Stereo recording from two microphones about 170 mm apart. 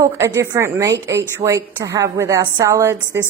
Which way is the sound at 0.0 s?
15° right (ahead or behind).